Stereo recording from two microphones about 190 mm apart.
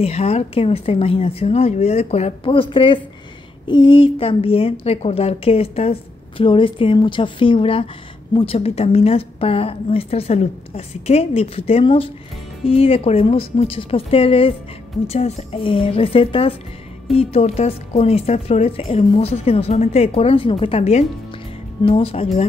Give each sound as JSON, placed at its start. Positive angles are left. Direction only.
{"t": 0.0, "sound": "a woman's voice", "side_deg": 35}